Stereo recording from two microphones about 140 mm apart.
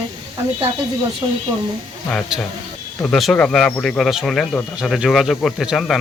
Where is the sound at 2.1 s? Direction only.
Centre (ahead or behind).